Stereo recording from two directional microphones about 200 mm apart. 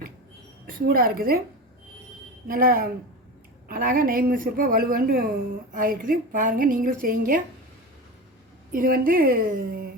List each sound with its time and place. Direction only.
0.7 s a woman's voice: 45° right (ahead or behind)
2.5 s a woman's voice: 45° right (ahead or behind)
8.7 s a woman's voice: 45° right (ahead or behind)